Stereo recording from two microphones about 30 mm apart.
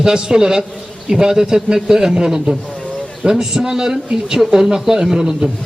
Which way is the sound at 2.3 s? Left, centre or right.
Right.